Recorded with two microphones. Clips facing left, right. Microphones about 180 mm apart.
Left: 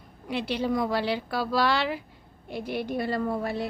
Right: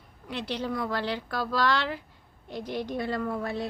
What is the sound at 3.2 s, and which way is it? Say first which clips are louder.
Speech: left 3 dB; 25° left (ahead or behind).